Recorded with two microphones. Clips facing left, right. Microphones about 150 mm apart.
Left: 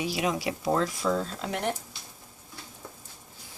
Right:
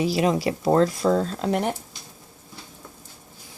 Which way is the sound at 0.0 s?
35° right (ahead or behind).